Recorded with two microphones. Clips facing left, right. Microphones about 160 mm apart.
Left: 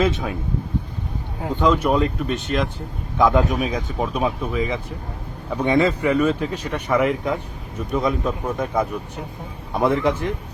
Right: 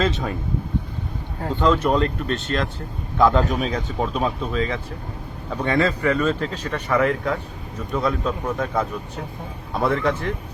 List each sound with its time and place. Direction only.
0.0 s speech: 5° left (ahead or behind)
1.4 s speech: 10° left (ahead or behind)